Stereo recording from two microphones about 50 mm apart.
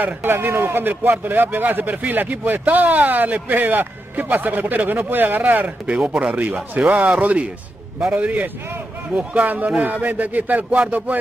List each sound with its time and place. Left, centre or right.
0.0 s a man's voice: right
5.9 s speech: right
6.3 s speech: right